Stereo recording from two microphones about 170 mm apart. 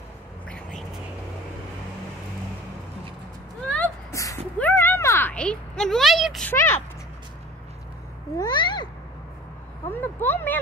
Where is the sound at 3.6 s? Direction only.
10° left (ahead or behind).